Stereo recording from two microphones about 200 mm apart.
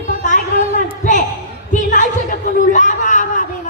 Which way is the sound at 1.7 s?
40° left (ahead or behind).